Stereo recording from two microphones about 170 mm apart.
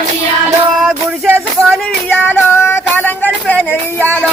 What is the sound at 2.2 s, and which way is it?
Music, 15° left (ahead or behind).